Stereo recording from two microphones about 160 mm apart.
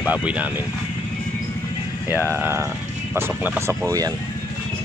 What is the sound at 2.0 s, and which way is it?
Speech, 15° right (ahead or behind).